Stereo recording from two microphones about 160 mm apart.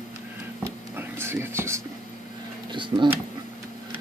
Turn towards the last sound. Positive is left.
turn(degrees=-30)  # may be behind; listen again after turning